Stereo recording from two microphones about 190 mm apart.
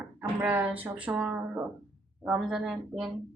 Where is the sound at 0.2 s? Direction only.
5° right (ahead or behind).